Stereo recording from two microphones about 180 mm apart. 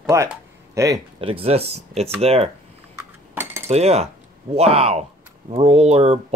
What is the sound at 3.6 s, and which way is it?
Speech, 35° right (ahead or behind).